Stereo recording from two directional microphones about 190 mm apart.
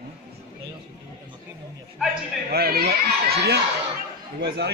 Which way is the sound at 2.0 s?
Centre (ahead or behind).